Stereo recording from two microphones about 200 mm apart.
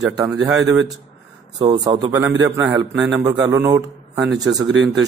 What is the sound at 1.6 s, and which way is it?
A man's voice, 20° right (ahead or behind).